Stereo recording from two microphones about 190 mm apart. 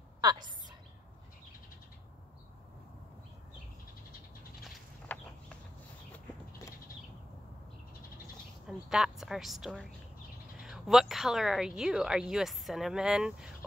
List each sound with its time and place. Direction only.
0.2 s a sound: 20° right (ahead or behind)
4.6 s bird: 5° left (ahead or behind)
8.6 s a woman's voice: centre (ahead or behind)